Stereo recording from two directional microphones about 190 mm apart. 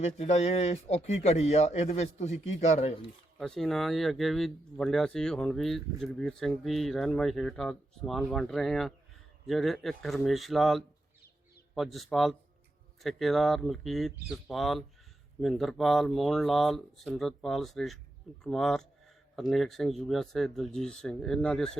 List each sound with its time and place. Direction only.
0.0 s speech: 35° left (ahead or behind)
3.3 s speech: centre (ahead or behind)